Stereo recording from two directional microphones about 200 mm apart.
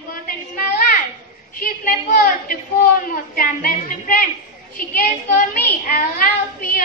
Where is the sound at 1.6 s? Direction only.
45° left (ahead or behind).